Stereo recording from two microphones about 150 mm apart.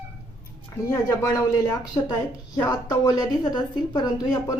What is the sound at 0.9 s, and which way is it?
A woman's voice, 25° left (ahead or behind).